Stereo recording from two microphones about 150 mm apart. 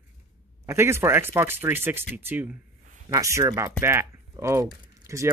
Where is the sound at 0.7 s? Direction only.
15° right (ahead or behind).